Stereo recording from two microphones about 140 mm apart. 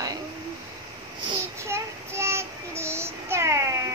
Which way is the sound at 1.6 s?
20° right (ahead or behind).